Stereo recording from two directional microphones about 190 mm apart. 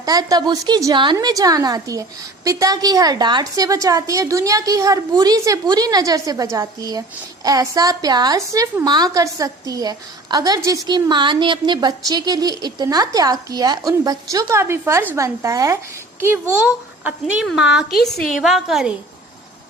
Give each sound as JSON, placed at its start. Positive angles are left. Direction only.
{"t": 0.0, "sound": "a woman's voice", "side_deg": -20}